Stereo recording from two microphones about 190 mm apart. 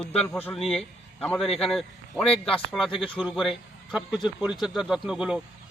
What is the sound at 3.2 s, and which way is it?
A man's voice, 5° right (ahead or behind).